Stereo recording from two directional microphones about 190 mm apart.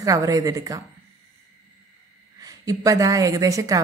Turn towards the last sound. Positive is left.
turn(degrees=-15)  # may be behind; listen again after turning